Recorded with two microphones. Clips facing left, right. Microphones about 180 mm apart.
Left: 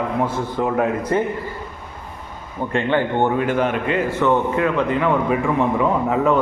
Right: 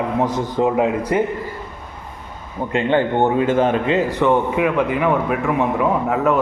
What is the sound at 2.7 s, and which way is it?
A man's voice, 20° right (ahead or behind).